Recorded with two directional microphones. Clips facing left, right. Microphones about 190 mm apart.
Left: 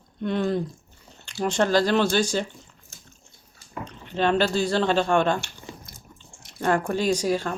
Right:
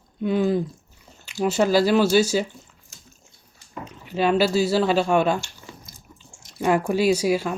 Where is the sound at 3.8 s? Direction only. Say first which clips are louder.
Right 2 dB; 10° right (ahead or behind).